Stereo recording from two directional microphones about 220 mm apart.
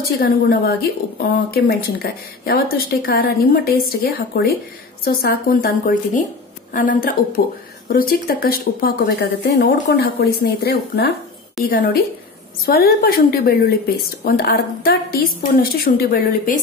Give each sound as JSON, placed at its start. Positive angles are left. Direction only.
{"t": 0.2, "sound": "a woman's voice", "side_deg": 45}